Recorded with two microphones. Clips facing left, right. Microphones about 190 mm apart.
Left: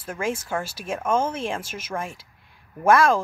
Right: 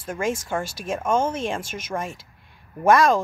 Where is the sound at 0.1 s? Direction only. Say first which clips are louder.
Right 2 dB; centre (ahead or behind).